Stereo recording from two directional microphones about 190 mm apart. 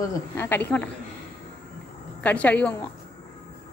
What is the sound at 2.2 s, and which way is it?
Speech, 5° left (ahead or behind).